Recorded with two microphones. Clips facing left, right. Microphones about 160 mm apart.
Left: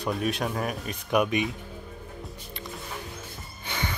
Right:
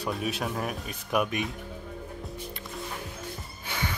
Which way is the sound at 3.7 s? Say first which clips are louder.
Left 1 dB; 5° right (ahead or behind).